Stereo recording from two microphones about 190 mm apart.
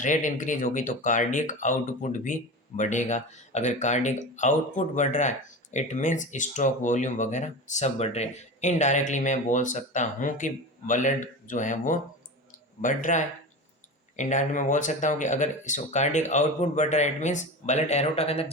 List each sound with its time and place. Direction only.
0.0 s speech: 40° left (ahead or behind)